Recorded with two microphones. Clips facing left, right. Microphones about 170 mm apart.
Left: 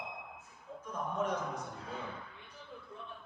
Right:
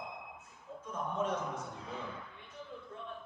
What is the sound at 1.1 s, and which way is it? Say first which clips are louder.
Speech: even; 10° left (ahead or behind).